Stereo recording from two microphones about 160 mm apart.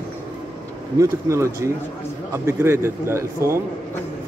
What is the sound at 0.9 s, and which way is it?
A man's voice, 15° right (ahead or behind).